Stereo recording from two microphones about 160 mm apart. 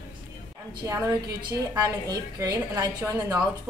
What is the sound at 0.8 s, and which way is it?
A woman's voice, 20° right (ahead or behind).